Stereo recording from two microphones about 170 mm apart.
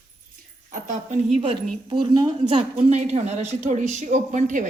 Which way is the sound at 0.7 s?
50° right (ahead or behind).